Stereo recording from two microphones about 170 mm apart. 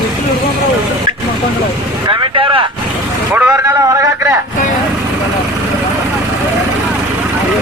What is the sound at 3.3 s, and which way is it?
A man's voice, 10° right (ahead or behind).